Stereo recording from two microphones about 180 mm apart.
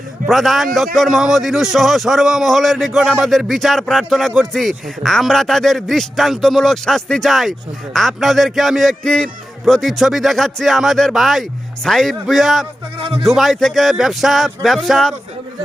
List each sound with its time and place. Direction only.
0.3 s speech: centre (ahead or behind)
13.0 s speech: 30° right (ahead or behind)
13.2 s speech: centre (ahead or behind)